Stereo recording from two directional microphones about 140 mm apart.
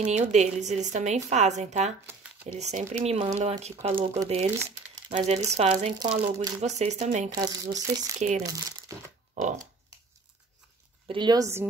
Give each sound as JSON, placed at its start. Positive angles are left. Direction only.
{"t": 0.0, "sound": "a woman's voice", "side_deg": -55}
{"t": 5.9, "sound": "speech", "side_deg": -30}
{"t": 6.6, "sound": "a woman's voice", "side_deg": -55}
{"t": 7.2, "sound": "speech", "side_deg": -30}
{"t": 9.4, "sound": "a woman's voice", "side_deg": -65}
{"t": 11.1, "sound": "speech", "side_deg": -35}